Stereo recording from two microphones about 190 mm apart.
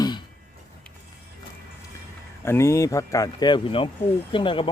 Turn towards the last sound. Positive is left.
turn(degrees=25)  # may be behind; listen again after turning